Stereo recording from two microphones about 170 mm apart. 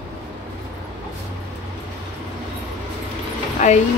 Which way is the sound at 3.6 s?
45° left (ahead or behind).